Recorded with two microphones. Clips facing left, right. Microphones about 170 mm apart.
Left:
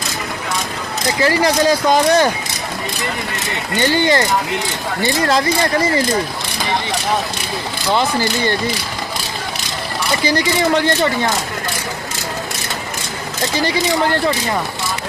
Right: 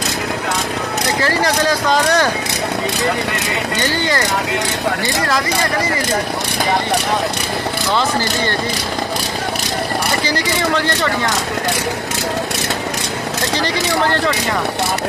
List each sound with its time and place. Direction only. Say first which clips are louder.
1.9 s speech: left 2 dB; 15° left (ahead or behind)
10.2 s speech: left 3 dB; 15° left (ahead or behind)